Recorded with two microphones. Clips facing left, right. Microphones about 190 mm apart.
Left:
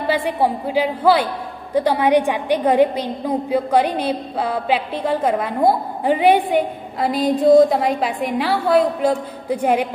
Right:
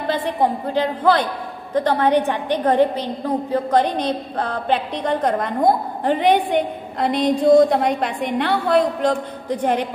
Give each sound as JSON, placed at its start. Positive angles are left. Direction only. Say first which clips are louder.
{"t": 0.0, "sound": "a man's voice", "louder": "left 1 dB", "side_deg": 10}